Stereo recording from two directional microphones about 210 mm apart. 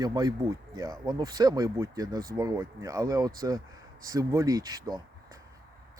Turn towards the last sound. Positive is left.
turn(degrees=-15)  # may be behind; listen again after turning